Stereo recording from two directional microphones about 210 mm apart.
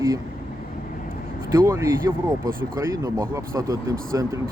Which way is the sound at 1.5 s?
15° right (ahead or behind).